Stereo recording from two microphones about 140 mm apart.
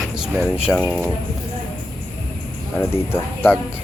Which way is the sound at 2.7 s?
15° left (ahead or behind).